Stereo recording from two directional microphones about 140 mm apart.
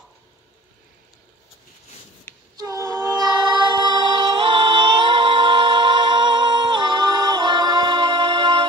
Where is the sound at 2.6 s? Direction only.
25° right (ahead or behind).